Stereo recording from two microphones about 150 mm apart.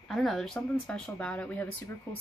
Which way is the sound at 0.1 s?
Centre (ahead or behind).